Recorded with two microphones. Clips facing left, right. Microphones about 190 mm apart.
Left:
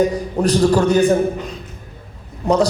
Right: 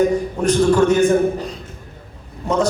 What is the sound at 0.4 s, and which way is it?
Speech, 35° left (ahead or behind).